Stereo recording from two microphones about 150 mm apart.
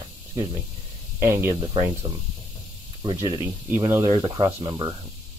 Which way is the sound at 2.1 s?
25° right (ahead or behind).